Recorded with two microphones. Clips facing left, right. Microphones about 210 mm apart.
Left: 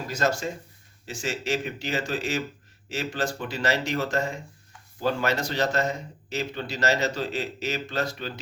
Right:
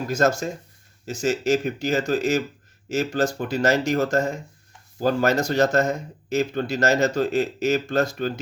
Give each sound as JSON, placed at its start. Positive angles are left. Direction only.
{"t": 0.1, "sound": "a man's voice", "side_deg": -45}